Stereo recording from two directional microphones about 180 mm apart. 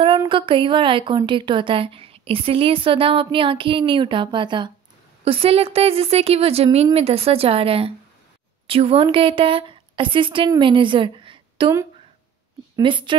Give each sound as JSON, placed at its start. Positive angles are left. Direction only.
{"t": 0.3, "sound": "a woman's voice", "side_deg": -30}
{"t": 12.7, "sound": "a woman's voice", "side_deg": -25}